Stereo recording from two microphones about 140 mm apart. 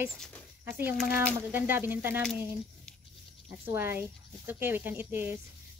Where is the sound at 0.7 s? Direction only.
15° right (ahead or behind).